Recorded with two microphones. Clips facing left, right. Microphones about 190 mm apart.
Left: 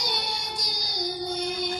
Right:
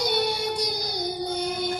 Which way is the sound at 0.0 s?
60° right (ahead or behind).